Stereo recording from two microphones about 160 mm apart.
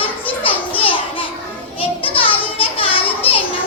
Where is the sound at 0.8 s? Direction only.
35° left (ahead or behind).